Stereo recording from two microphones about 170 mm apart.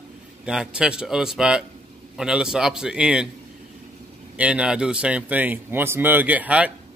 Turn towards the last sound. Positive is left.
turn(degrees=-10)  # may be behind; listen again after turning